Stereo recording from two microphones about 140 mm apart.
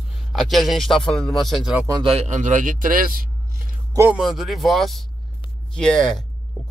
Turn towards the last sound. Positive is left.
turn(degrees=5)  # may be behind; listen again after turning